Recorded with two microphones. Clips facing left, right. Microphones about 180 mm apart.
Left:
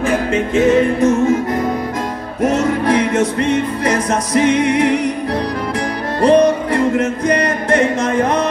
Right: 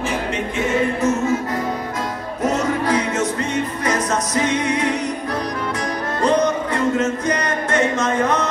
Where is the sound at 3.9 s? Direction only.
30° left (ahead or behind).